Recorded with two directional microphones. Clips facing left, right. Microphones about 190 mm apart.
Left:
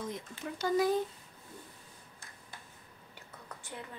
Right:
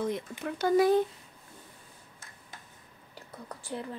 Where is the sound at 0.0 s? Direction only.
65° right (ahead or behind).